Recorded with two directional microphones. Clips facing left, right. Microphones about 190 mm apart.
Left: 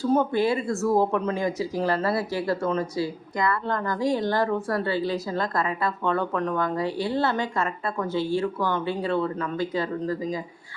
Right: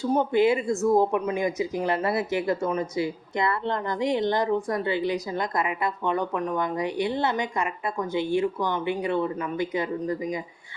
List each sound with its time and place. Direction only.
0.0 s speech: 20° right (ahead or behind)